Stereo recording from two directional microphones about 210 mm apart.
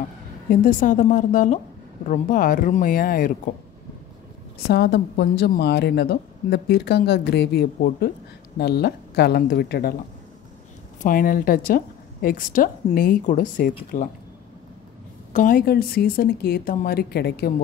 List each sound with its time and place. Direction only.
0.5 s speech: 40° left (ahead or behind)
4.6 s speech: 50° left (ahead or behind)
11.0 s speech: 40° left (ahead or behind)
15.3 s speech: 40° left (ahead or behind)